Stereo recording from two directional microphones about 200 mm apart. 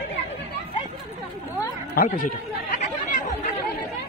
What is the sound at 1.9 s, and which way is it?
Chatter, 45° left (ahead or behind).